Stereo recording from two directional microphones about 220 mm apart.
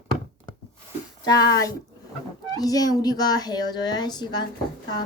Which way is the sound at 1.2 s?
15° left (ahead or behind).